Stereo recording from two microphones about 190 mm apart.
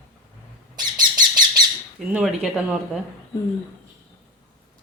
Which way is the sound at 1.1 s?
20° right (ahead or behind).